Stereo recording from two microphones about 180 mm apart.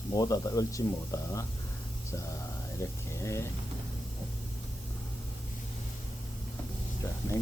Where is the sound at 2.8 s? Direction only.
15° left (ahead or behind).